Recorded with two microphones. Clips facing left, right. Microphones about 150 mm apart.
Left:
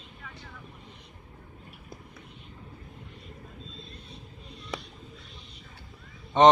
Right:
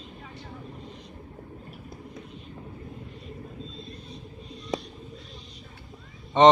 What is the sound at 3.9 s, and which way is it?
Vehicle, 60° left (ahead or behind).